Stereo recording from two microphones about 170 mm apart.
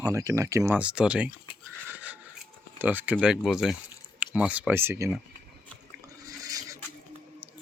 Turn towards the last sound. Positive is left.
turn(degrees=-10)  # may be behind; listen again after turning